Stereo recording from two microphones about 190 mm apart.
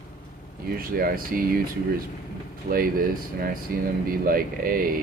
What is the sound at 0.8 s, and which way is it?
Speech, 50° right (ahead or behind).